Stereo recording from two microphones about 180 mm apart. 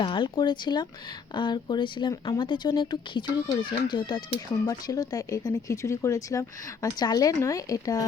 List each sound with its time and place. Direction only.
0.0 s speech: 25° left (ahead or behind)